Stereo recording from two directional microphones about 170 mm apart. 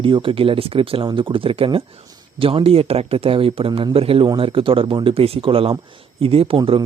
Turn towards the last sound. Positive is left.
turn(degrees=-30)  # may be behind; listen again after turning